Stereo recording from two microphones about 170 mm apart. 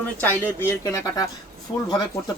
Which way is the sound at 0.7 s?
20° left (ahead or behind).